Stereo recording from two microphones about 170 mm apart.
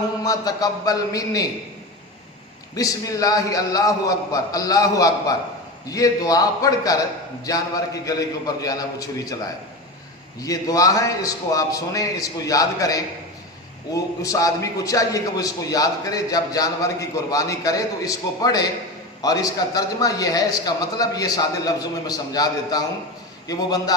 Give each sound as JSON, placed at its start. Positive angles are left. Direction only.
{"t": 0.3, "sound": "a man's voice", "side_deg": 20}
{"t": 2.7, "sound": "a man's voice", "side_deg": 20}
{"t": 10.4, "sound": "a man's voice", "side_deg": 20}